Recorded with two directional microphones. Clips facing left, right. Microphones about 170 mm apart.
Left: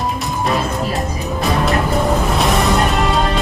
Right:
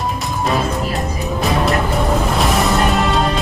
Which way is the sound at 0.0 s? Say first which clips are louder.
Left 1 dB; centre (ahead or behind).